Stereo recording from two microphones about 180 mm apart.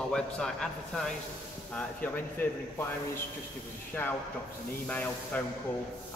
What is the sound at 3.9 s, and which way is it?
Speech, 10° left (ahead or behind).